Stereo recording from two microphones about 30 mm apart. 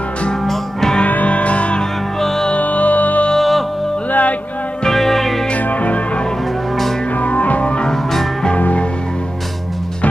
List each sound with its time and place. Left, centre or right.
0.5 s music: centre
1.0 s music: left
2.1 s music: centre
2.5 s music: left
3.3 s music: centre
4.1 s music: left
4.9 s music: centre
5.7 s music: left
7.2 s music: left
7.9 s music: centre